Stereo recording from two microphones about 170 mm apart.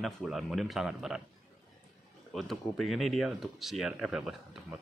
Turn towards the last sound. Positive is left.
turn(degrees=-5)  # may be behind; listen again after turning